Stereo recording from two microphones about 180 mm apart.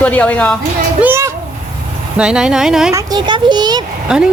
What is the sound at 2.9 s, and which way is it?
Speech, 20° right (ahead or behind).